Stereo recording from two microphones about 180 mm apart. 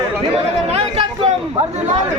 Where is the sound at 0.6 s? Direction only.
35° right (ahead or behind).